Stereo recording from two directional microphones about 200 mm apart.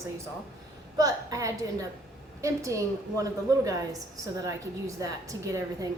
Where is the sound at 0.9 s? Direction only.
20° right (ahead or behind).